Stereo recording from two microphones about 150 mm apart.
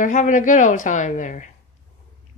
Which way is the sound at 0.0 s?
55° left (ahead or behind).